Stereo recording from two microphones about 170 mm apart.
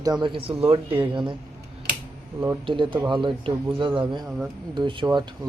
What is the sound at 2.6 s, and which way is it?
Speech, 30° right (ahead or behind).